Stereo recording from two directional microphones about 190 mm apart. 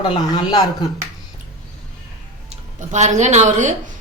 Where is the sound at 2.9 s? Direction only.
40° right (ahead or behind).